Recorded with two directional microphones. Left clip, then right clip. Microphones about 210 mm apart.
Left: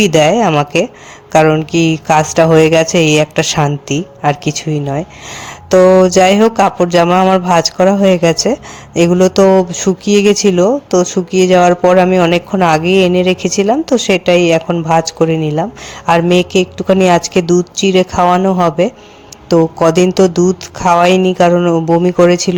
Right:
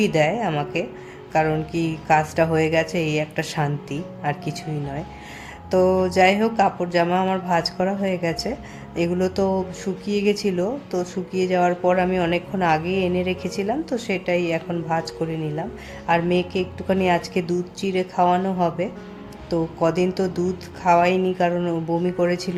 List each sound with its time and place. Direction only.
0.0 s a man's voice: 35° left (ahead or behind)